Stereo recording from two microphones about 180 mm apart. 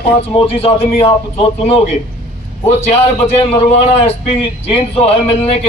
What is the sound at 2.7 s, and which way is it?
A man's voice, 35° left (ahead or behind).